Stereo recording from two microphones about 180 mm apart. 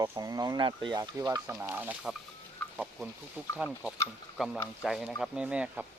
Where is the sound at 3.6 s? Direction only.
5° right (ahead or behind).